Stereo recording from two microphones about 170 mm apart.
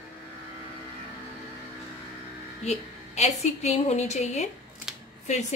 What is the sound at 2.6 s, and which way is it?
A woman's voice, 40° left (ahead or behind).